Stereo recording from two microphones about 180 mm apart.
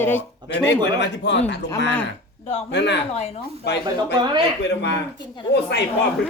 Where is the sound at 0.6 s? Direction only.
75° left (ahead or behind).